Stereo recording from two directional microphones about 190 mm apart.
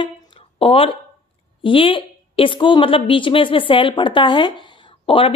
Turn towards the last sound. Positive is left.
turn(degrees=30)  # may be behind; listen again after turning